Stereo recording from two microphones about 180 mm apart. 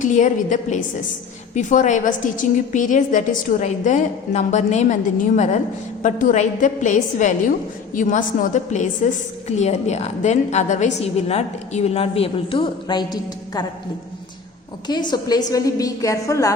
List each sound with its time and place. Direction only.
0.0 s a woman's voice: 45° left (ahead or behind); by 13.7 s 25° left (ahead or behind)
14.8 s a woman's voice: 25° left (ahead or behind)